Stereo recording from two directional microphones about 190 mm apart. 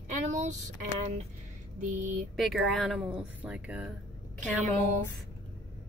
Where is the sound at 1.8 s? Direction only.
40° right (ahead or behind).